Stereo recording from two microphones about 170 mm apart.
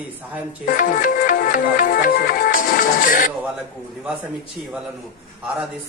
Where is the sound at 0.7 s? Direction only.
50° left (ahead or behind).